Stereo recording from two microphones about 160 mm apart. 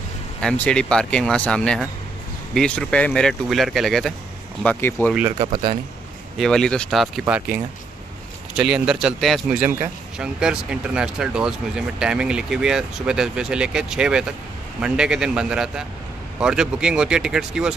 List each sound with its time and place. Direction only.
0.4 s speech: 5° left (ahead or behind)
4.6 s speech: 15° left (ahead or behind)
5.4 s speech: 35° right (ahead or behind)
6.3 s speech: 5° left (ahead or behind)